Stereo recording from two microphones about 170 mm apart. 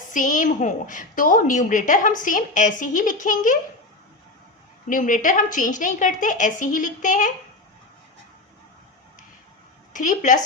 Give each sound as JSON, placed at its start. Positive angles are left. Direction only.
{"t": 0.1, "sound": "a woman's voice", "side_deg": 50}
{"t": 4.9, "sound": "a woman's voice", "side_deg": 50}
{"t": 9.9, "sound": "speech", "side_deg": 50}